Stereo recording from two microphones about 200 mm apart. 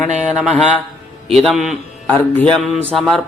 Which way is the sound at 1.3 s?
Centre (ahead or behind).